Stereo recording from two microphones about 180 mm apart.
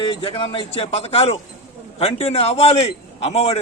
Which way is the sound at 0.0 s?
30° left (ahead or behind).